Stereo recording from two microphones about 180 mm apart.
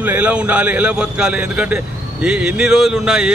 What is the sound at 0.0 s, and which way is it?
Speech, 10° right (ahead or behind).